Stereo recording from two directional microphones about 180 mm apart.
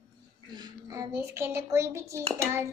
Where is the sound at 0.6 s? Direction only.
15° right (ahead or behind).